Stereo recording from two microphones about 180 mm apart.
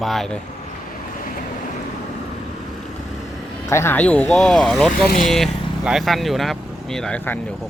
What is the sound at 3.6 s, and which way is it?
Speech, 15° left (ahead or behind).